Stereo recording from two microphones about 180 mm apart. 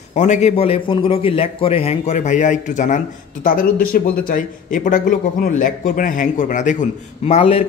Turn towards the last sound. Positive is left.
turn(degrees=35)  # may be behind; listen again after turning